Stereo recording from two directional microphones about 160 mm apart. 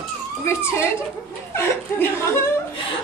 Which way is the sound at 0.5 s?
15° left (ahead or behind).